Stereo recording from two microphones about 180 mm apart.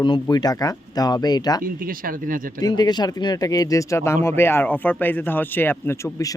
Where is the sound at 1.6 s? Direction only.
50° right (ahead or behind).